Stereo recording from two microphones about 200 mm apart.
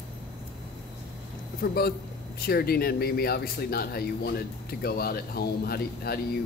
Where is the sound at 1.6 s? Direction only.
50° left (ahead or behind).